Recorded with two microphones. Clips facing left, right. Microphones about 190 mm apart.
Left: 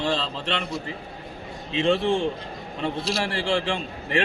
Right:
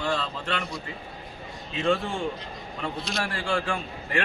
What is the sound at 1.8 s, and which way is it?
A man's voice, 25° left (ahead or behind).